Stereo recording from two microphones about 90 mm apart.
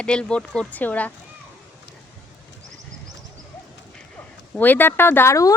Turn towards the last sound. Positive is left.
turn(degrees=35)  # may be behind; listen again after turning